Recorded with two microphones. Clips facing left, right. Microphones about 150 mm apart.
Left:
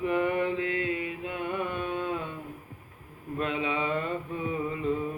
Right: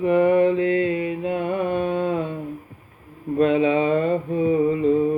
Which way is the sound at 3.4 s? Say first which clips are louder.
Right 12 dB; 35° right (ahead or behind).